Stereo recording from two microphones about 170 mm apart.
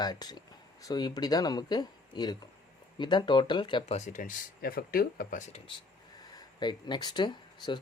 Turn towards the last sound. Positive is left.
turn(degrees=25)  # may be behind; listen again after turning